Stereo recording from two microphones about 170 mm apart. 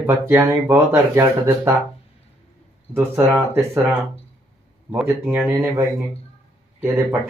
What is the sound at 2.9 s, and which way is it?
Speech, 15° right (ahead or behind).